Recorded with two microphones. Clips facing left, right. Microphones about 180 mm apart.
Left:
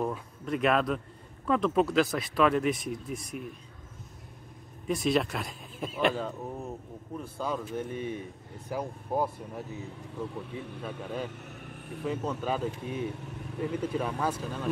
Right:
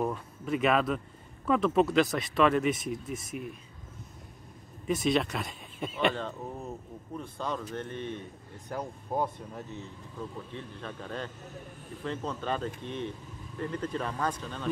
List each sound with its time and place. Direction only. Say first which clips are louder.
0.0 s speech: even; centre (ahead or behind)
4.8 s speech: even; centre (ahead or behind)
13.1 s vehicle: left 5 dB; 70° left (ahead or behind)
13.6 s speech: left 3 dB; 10° left (ahead or behind)